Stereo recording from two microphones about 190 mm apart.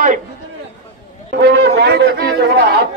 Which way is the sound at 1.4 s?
60° right (ahead or behind).